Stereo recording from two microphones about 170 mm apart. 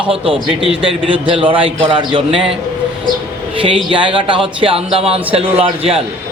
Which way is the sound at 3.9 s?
30° right (ahead or behind).